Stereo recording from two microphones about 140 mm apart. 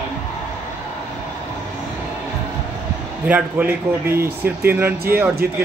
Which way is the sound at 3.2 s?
10° right (ahead or behind).